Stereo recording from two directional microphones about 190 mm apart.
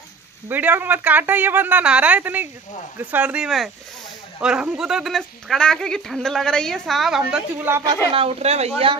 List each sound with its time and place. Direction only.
0.5 s a woman's voice: 10° right (ahead or behind); by 8.9 s 30° right (ahead or behind)